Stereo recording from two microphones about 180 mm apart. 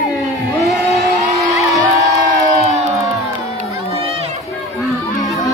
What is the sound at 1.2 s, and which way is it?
Crowd, 20° right (ahead or behind).